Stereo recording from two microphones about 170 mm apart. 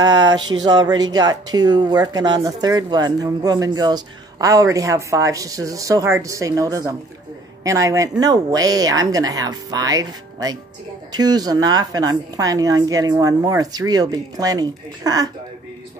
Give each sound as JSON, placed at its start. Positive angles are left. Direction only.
{"t": 0.0, "sound": "speech", "side_deg": -25}